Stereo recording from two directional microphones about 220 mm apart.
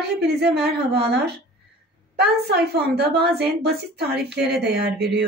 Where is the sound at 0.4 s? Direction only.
50° right (ahead or behind).